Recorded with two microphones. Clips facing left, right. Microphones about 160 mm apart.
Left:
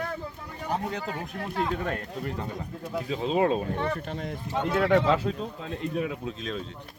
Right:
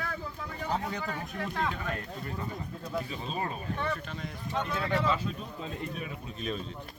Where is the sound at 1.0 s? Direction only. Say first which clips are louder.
Left 2 dB; 30° left (ahead or behind).